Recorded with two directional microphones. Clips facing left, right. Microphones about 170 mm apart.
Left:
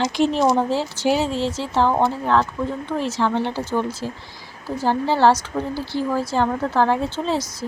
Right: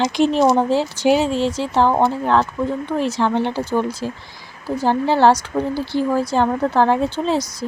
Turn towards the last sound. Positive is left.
turn(degrees=-15)  # may be behind; listen again after turning